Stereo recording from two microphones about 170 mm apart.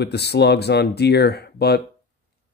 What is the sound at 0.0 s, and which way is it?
Speech, 75° left (ahead or behind).